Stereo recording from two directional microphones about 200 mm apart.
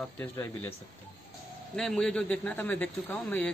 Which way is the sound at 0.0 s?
10° left (ahead or behind).